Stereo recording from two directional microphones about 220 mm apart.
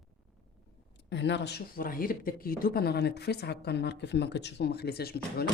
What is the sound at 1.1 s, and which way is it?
Speech, 55° left (ahead or behind).